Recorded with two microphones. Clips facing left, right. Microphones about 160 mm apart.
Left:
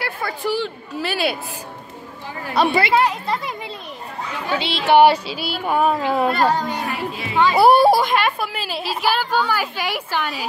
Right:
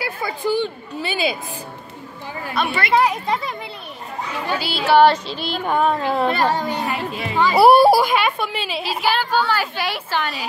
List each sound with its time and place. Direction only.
0.0 s chatter: centre (ahead or behind)
0.6 s speech: centre (ahead or behind)
2.5 s a woman's voice: 35° left (ahead or behind)
4.6 s a woman's voice: 25° left (ahead or behind)